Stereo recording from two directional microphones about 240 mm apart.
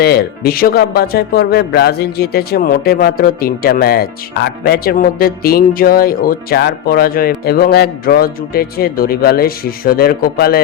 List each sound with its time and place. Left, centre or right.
0.0 s speech: left